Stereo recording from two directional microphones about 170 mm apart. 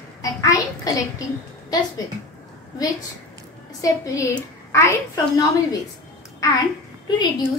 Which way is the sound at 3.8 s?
20° left (ahead or behind).